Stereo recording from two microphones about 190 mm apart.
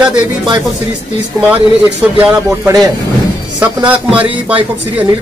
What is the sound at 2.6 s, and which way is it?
Speech, 20° right (ahead or behind).